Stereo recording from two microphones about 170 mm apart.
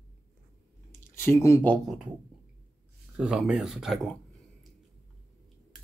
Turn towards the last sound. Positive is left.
turn(degrees=0)  # may be behind; listen again after turning